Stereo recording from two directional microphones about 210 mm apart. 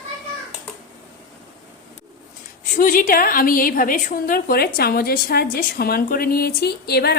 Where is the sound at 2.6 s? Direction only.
40° left (ahead or behind).